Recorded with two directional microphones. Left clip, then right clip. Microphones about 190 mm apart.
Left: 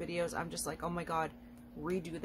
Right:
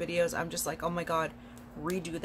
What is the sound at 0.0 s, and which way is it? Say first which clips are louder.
Speech: right 7 dB; 15° left (ahead or behind).